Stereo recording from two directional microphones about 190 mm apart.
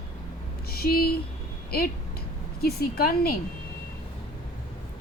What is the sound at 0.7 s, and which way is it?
Speech, 55° left (ahead or behind).